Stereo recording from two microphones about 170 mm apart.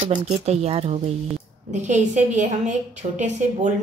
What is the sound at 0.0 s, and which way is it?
Speech, 35° right (ahead or behind).